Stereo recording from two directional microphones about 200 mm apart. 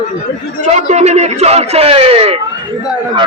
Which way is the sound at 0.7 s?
35° right (ahead or behind).